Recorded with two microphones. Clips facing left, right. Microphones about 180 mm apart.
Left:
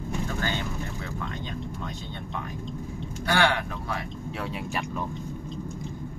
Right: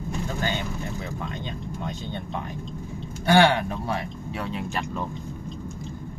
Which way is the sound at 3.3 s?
25° right (ahead or behind).